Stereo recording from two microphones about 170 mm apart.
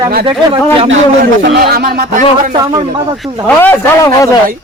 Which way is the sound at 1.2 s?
60° right (ahead or behind).